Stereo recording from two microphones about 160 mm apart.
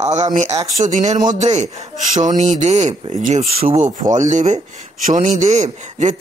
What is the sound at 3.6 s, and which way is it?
A man's voice, 55° right (ahead or behind).